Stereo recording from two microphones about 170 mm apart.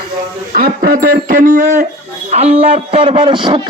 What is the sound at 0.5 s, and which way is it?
Speech, 55° right (ahead or behind).